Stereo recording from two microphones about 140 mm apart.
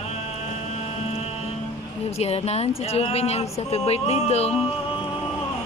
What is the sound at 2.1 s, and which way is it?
Speech, 50° left (ahead or behind).